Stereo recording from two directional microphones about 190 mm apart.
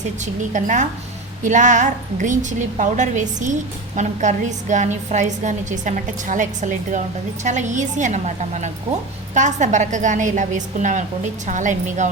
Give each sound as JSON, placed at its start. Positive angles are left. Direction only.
{"t": 0.5, "sound": "a woman's voice", "side_deg": -40}